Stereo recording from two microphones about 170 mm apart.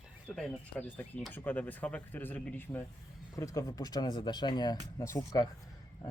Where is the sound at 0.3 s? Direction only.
5° left (ahead or behind).